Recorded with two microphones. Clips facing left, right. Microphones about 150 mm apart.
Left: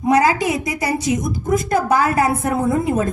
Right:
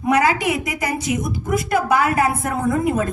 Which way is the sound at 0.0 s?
35° left (ahead or behind).